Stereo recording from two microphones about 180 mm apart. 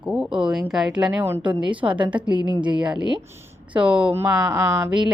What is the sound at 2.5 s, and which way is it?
Speech, 25° right (ahead or behind).